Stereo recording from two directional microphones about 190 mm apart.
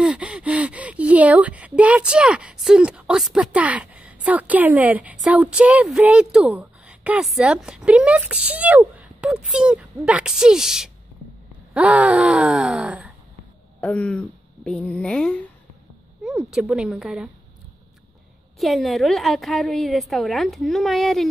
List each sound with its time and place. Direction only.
0.0 s speech: 5° right (ahead or behind)
11.7 s groan: 5° right (ahead or behind)
13.7 s a woman's voice: 5° left (ahead or behind)
18.6 s a woman's voice: centre (ahead or behind)